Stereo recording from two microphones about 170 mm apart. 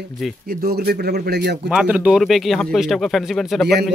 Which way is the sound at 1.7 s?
5° right (ahead or behind).